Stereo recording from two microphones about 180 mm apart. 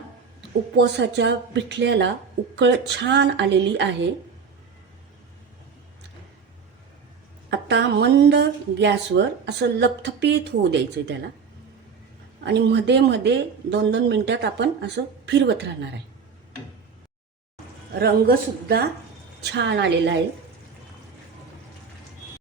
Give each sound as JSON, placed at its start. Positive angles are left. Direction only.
{"t": 0.8, "sound": "a woman's voice", "side_deg": -75}
{"t": 7.5, "sound": "a woman's voice", "side_deg": -75}
{"t": 12.5, "sound": "a woman's voice", "side_deg": -75}
{"t": 18.0, "sound": "speech", "side_deg": -60}
{"t": 19.4, "sound": "a woman's voice", "side_deg": -75}